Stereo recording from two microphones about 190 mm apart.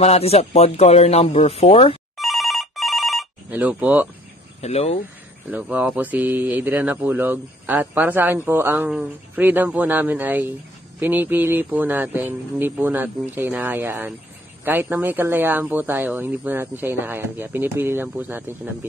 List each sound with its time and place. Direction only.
0.0 s speech: 35° left (ahead or behind)
2.1 s telephone bell ringing: centre (ahead or behind)
4.6 s speech: 30° left (ahead or behind)
5.5 s speech: 10° right (ahead or behind)